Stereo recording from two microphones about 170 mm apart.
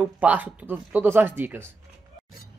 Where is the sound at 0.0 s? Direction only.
10° right (ahead or behind).